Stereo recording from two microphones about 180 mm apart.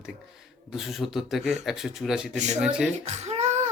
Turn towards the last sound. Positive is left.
turn(degrees=-40)  # may be behind; listen again after turning